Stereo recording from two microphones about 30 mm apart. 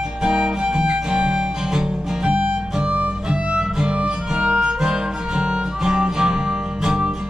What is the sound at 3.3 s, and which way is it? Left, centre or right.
Music, right.